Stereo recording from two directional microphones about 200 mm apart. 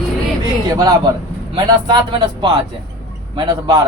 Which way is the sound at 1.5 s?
20° right (ahead or behind).